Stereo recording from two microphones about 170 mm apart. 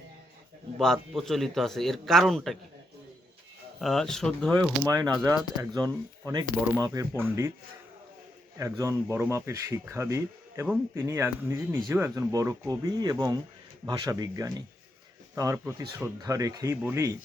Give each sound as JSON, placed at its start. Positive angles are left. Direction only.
{"t": 0.8, "sound": "a man's voice", "side_deg": 5}
{"t": 3.8, "sound": "a man's voice", "side_deg": 0}
{"t": 4.9, "sound": "speech", "side_deg": -20}
{"t": 8.5, "sound": "speech", "side_deg": -20}